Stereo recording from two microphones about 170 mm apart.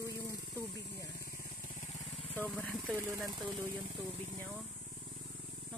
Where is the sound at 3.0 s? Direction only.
15° right (ahead or behind).